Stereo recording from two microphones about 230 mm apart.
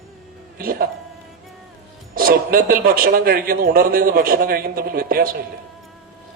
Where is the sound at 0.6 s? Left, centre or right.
Right.